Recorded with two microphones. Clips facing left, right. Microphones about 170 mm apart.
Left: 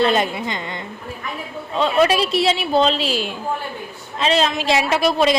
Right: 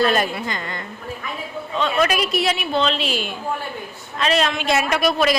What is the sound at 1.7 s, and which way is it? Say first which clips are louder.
A woman's voice: left 4 dB; 30° left (ahead or behind).